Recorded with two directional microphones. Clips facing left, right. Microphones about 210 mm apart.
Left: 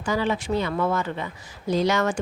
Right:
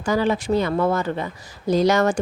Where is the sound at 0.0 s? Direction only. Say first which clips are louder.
Right 4 dB; 40° right (ahead or behind).